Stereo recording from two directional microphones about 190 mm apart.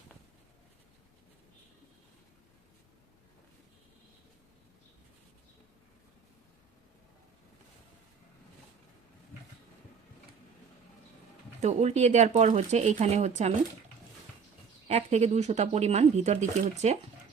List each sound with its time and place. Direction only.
11.6 s speech: 35° right (ahead or behind)
14.8 s speech: 35° right (ahead or behind)